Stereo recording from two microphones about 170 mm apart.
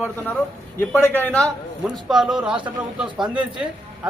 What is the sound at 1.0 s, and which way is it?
A man's voice, 10° left (ahead or behind).